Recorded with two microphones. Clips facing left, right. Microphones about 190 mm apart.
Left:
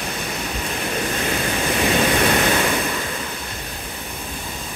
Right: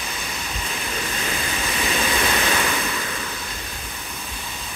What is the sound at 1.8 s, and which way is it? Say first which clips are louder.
Vehicle: left 5 dB; 50° left (ahead or behind).